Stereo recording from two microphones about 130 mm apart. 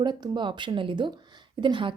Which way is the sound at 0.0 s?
35° right (ahead or behind).